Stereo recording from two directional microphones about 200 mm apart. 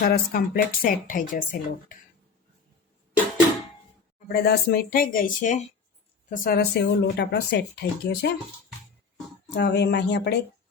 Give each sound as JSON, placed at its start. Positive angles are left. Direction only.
{"t": 0.0, "sound": "a woman's voice", "side_deg": 50}
{"t": 4.3, "sound": "a woman's voice", "side_deg": 55}
{"t": 9.6, "sound": "speech", "side_deg": 55}